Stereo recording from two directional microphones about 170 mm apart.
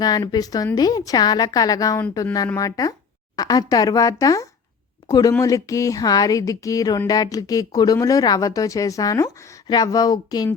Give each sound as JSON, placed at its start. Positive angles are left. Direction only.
{"t": 0.0, "sound": "speech", "side_deg": 25}